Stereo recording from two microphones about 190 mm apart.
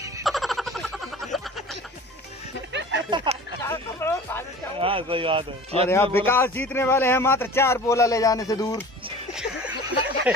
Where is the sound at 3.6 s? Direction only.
15° left (ahead or behind).